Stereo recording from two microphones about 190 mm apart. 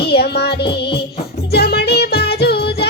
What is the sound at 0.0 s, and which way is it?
Music, 60° left (ahead or behind).